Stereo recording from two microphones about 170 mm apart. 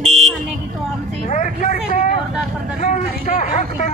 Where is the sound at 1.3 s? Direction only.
45° left (ahead or behind).